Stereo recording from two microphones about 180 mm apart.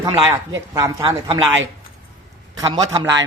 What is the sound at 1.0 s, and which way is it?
Speech, 30° right (ahead or behind).